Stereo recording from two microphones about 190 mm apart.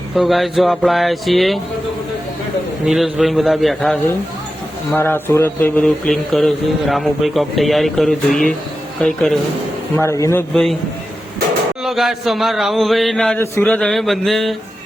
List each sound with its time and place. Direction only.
0.2 s mantra: centre (ahead or behind)
2.8 s mantra: centre (ahead or behind)
4.9 s mantra: 10° left (ahead or behind)
9.9 s speech: 15° left (ahead or behind)
10.5 s mantra: centre (ahead or behind)
11.8 s mantra: centre (ahead or behind)